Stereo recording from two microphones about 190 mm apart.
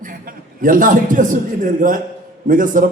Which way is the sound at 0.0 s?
45° right (ahead or behind).